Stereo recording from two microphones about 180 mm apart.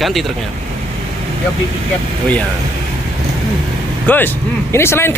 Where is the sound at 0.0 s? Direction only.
Centre (ahead or behind).